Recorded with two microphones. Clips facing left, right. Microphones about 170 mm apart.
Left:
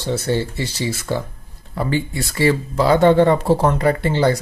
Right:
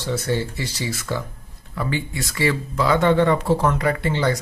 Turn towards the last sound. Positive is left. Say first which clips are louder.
# left 4 dB
turn(degrees=35)  # may be behind; listen again after turning